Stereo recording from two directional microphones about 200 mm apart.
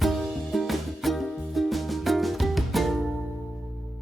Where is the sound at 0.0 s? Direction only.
Centre (ahead or behind).